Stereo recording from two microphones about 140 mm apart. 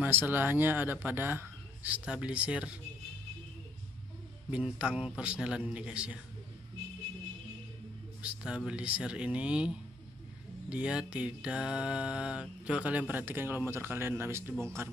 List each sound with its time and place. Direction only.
0.0 s mantra: 15° right (ahead or behind)
4.5 s mantra: 10° right (ahead or behind)
8.2 s mantra: 5° right (ahead or behind)